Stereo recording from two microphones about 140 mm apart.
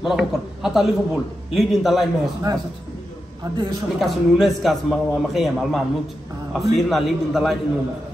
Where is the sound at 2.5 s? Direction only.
25° right (ahead or behind).